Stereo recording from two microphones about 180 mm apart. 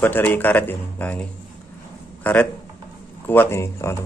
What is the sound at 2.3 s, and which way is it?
Speech, 10° left (ahead or behind).